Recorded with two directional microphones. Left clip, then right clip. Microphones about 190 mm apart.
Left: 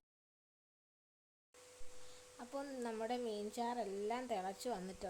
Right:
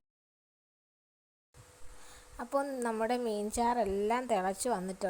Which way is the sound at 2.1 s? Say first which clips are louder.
Right 15 dB; 30° right (ahead or behind).